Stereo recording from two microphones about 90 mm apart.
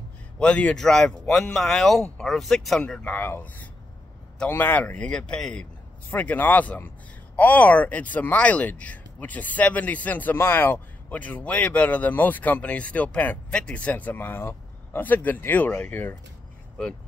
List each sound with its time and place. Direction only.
0.4 s speech: 15° left (ahead or behind)
3.0 s speech: 20° left (ahead or behind)
4.5 s speech: 25° left (ahead or behind)